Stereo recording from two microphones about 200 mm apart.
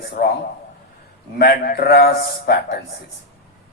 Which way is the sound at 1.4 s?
50° left (ahead or behind).